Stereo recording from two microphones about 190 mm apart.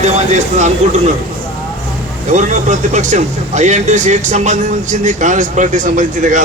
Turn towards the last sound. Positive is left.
turn(degrees=-40)  # may be behind; listen again after turning